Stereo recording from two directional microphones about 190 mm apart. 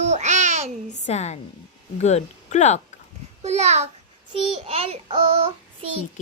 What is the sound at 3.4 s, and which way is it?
A child's voice, 35° right (ahead or behind).